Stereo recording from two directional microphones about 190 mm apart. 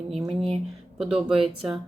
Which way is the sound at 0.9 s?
Centre (ahead or behind).